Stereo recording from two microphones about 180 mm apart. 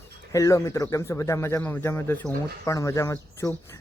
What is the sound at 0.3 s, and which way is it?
Speech, 20° left (ahead or behind).